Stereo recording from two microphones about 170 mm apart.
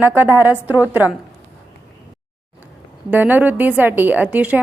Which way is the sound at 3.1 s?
10° right (ahead or behind).